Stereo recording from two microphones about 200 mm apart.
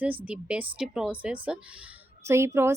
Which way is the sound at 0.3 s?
5° right (ahead or behind).